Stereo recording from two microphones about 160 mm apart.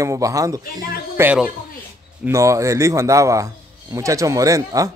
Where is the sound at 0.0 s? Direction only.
20° right (ahead or behind).